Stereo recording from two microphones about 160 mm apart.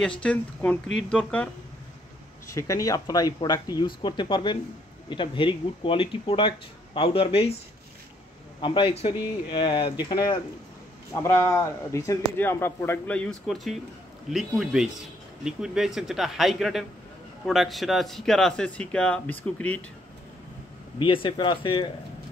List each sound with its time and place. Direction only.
0.2 s speech: 10° left (ahead or behind)
2.4 s speech: 20° left (ahead or behind); by 7.5 s 35° left (ahead or behind)
8.5 s a man's voice: 30° left (ahead or behind); by 19.8 s 10° left (ahead or behind)
21.0 s speech: 35° left (ahead or behind)